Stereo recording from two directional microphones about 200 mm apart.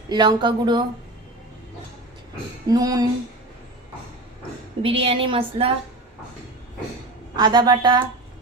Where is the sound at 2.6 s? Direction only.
20° right (ahead or behind).